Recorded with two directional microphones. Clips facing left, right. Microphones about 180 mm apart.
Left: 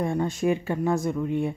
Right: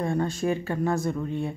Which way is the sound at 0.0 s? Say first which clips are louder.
Left 1 dB; 15° left (ahead or behind).